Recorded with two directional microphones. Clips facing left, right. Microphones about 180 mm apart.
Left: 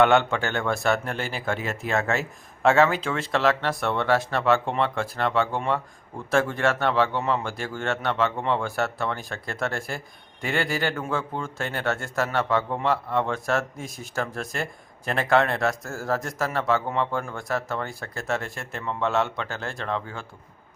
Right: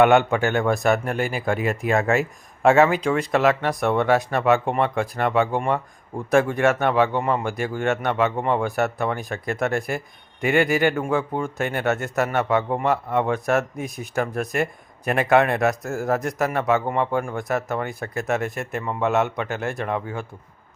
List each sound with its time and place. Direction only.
0.0 s speech: 15° right (ahead or behind)
1.0 s speech: 5° right (ahead or behind)
1.9 s speech: 15° right (ahead or behind)